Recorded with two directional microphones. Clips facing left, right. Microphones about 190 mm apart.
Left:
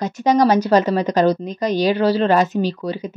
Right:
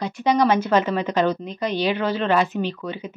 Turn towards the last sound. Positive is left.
turn(degrees=35)  # may be behind; listen again after turning